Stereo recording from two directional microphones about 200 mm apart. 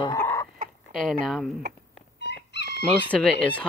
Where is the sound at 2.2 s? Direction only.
60° left (ahead or behind).